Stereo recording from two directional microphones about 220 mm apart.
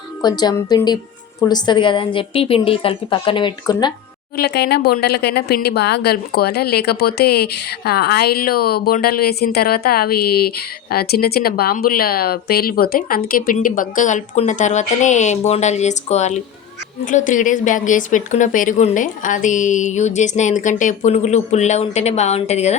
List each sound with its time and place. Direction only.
0.2 s a woman's voice: 20° left (ahead or behind)
4.4 s speech: 45° left (ahead or behind); by 22.8 s 30° left (ahead or behind)